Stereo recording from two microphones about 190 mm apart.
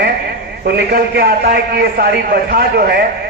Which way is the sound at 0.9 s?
55° right (ahead or behind).